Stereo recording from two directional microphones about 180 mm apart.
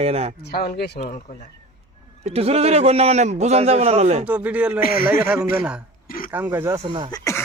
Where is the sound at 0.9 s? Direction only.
40° left (ahead or behind).